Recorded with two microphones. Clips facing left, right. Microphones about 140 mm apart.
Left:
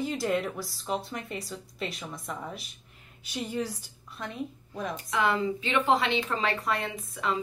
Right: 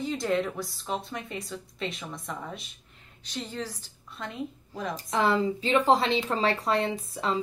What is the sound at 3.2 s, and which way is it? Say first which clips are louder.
A woman's voice: left 3 dB; 10° left (ahead or behind).